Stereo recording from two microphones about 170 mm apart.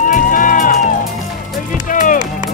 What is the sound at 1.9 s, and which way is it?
Music, 50° left (ahead or behind).